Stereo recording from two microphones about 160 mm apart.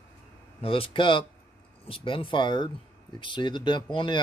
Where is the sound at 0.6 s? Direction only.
35° left (ahead or behind).